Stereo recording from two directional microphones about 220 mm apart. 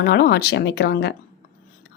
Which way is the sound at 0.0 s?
50° left (ahead or behind).